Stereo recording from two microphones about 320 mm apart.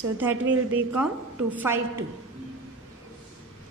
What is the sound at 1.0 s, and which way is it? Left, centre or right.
Speech, centre.